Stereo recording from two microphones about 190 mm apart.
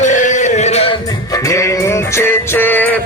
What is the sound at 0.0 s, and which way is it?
Male singing, 40° left (ahead or behind).